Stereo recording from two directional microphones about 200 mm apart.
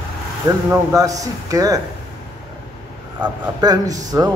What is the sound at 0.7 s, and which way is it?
Speech, 15° right (ahead or behind).